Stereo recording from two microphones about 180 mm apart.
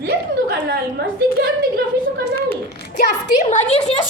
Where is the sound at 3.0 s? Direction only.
40° left (ahead or behind).